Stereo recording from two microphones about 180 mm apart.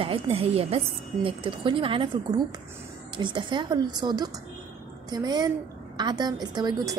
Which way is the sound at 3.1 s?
25° right (ahead or behind).